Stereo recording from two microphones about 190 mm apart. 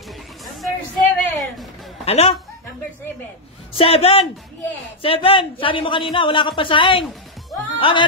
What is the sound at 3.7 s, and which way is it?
Speech, 30° left (ahead or behind).